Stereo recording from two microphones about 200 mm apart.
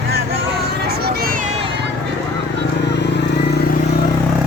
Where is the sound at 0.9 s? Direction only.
50° right (ahead or behind).